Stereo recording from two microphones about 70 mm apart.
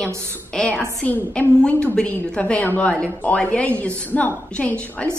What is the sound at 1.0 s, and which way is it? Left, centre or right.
A woman's voice, left.